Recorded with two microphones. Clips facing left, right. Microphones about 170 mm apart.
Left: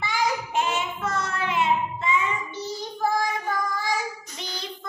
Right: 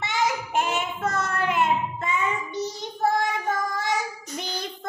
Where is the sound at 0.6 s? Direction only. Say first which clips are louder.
Right 2 dB; 50° right (ahead or behind).